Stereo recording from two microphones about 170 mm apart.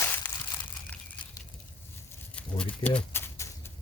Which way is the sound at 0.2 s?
10° left (ahead or behind).